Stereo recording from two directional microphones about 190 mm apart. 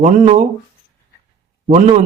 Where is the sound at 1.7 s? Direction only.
30° right (ahead or behind).